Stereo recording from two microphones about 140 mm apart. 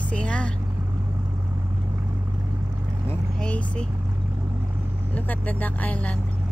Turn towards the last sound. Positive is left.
turn(degrees=10)  # may be behind; listen again after turning